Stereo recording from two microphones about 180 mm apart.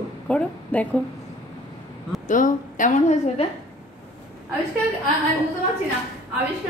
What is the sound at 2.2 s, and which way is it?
A woman's voice, 45° left (ahead or behind).